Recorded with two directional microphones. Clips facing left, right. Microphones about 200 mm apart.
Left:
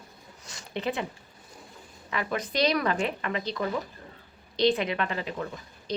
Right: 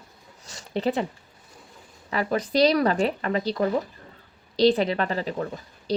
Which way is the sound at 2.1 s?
35° right (ahead or behind).